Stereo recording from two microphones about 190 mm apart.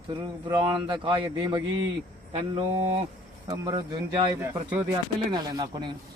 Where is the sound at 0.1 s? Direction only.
25° right (ahead or behind).